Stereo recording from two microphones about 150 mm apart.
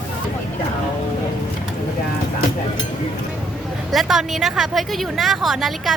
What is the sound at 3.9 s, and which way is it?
A woman's voice, centre (ahead or behind).